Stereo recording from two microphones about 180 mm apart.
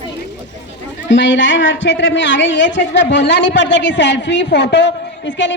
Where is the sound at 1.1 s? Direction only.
90° left.